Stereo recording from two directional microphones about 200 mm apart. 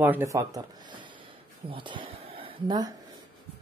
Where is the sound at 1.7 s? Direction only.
25° right (ahead or behind).